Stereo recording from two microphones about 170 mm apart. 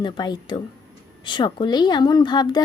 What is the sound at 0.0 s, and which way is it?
Speech, 25° left (ahead or behind).